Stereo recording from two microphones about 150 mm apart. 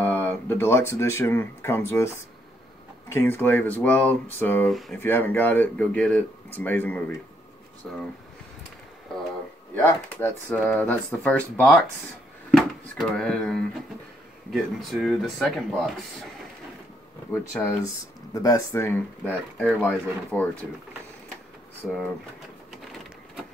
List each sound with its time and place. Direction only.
0.0 s speech: 10° left (ahead or behind)
3.1 s speech: 15° left (ahead or behind)
4.6 s speech: centre (ahead or behind)
4.9 s speech: 15° left (ahead or behind)
7.8 s speech: centre (ahead or behind)
9.8 s speech: 15° left (ahead or behind)
17.3 s speech: 15° left (ahead or behind)